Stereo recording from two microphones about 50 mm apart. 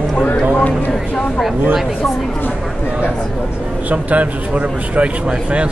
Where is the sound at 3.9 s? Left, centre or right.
Right.